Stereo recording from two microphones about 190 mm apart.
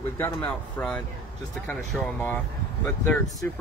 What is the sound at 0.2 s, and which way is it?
Speech, 10° left (ahead or behind).